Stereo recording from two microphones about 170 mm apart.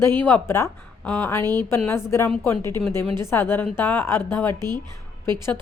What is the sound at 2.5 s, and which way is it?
A woman's voice, 15° left (ahead or behind).